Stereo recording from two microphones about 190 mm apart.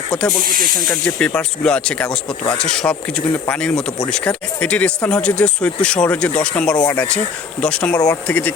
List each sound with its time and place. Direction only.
0.9 s speech: 5° left (ahead or behind)
7.9 s speech: 20° left (ahead or behind)
8.3 s speech: 10° left (ahead or behind)